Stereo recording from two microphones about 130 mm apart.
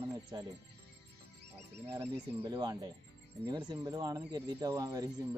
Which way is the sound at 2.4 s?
35° right (ahead or behind).